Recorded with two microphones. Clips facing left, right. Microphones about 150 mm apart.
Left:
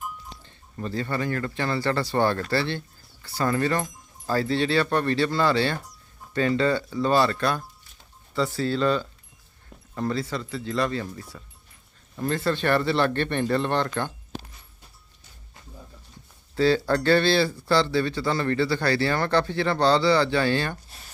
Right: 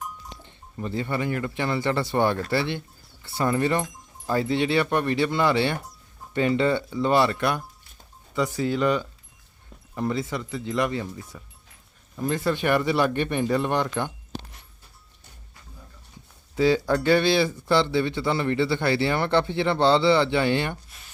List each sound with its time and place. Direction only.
0.4 s speech: 20° right (ahead or behind)
16.6 s speech: 15° right (ahead or behind)